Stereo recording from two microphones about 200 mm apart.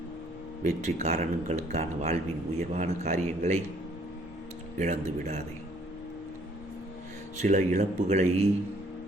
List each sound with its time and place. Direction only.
0.6 s speech: 35° right (ahead or behind)
4.8 s speech: 35° right (ahead or behind)
7.4 s speech: 35° right (ahead or behind)